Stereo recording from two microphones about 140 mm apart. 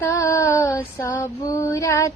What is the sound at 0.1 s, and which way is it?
Female singing, 20° left (ahead or behind).